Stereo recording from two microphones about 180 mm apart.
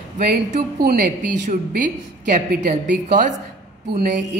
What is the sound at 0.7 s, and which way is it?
A woman's voice, 60° right (ahead or behind).